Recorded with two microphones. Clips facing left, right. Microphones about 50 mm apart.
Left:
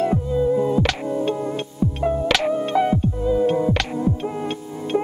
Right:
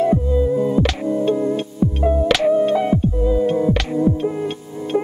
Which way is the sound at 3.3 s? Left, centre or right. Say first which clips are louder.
Left 1 dB; centre.